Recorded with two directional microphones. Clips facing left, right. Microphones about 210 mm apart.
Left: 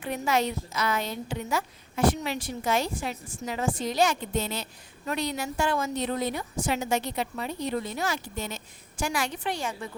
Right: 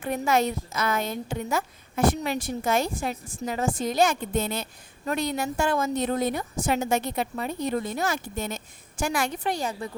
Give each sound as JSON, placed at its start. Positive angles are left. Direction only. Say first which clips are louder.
{"t": 0.0, "sound": "a woman's voice", "louder": "right 3 dB", "side_deg": -45}